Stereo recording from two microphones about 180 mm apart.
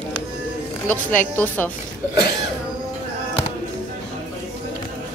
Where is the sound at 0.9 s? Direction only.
10° left (ahead or behind).